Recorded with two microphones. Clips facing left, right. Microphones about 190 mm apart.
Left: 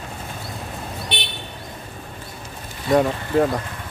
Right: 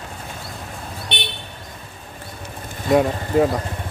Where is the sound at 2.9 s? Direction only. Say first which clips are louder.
Right 1 dB; 5° right (ahead or behind).